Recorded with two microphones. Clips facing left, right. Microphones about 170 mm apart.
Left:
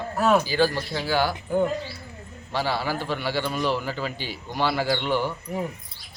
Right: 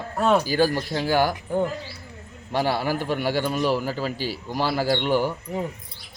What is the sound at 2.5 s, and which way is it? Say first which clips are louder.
Speech: right 3 dB; 50° right (ahead or behind).